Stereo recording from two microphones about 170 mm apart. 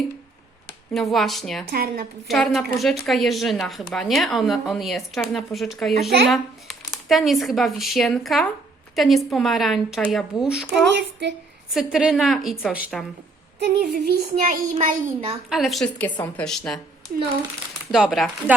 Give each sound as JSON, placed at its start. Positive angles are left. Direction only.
{"t": 0.9, "sound": "speech", "side_deg": 0}
{"t": 1.7, "sound": "a child's voice", "side_deg": -60}
{"t": 2.2, "sound": "speech", "side_deg": 0}
{"t": 10.9, "sound": "speech", "side_deg": -90}
{"t": 11.7, "sound": "speech", "side_deg": -5}
{"t": 13.6, "sound": "a child's voice", "side_deg": -70}
{"t": 15.4, "sound": "speech", "side_deg": 0}
{"t": 17.9, "sound": "speech", "side_deg": 0}